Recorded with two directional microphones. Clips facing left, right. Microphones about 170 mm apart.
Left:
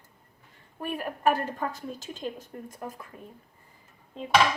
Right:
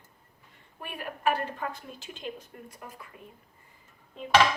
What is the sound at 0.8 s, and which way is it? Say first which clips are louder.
A woman's voice: left 4 dB; 45° left (ahead or behind).